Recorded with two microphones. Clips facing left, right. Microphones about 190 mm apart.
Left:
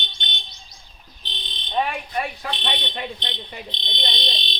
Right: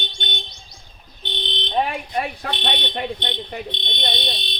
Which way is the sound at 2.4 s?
60° right (ahead or behind).